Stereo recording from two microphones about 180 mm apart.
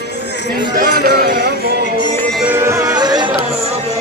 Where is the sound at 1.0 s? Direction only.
60° right (ahead or behind).